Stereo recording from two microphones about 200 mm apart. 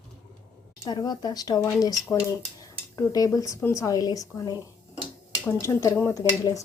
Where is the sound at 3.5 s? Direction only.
15° left (ahead or behind).